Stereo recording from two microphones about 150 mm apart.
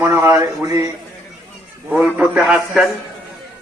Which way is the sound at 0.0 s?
20° right (ahead or behind).